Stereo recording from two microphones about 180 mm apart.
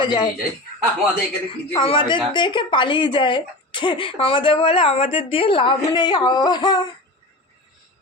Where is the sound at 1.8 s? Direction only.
25° left (ahead or behind).